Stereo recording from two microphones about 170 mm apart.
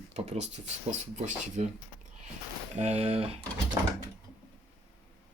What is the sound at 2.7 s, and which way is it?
Speech, 40° right (ahead or behind).